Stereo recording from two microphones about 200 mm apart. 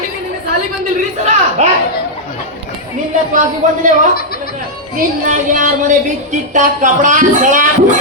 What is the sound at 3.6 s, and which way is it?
Speech, 35° right (ahead or behind).